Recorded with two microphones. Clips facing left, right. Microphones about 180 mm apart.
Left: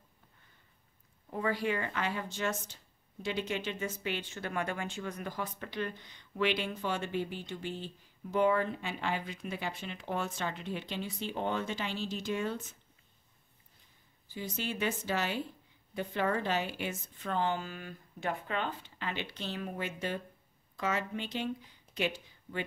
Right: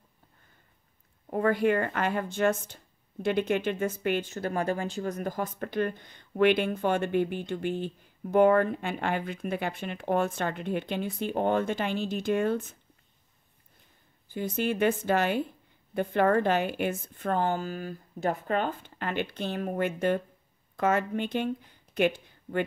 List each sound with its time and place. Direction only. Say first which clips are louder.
1.3 s a woman's voice: right 8 dB; 55° right (ahead or behind)
14.3 s a woman's voice: right 9 dB; 55° right (ahead or behind)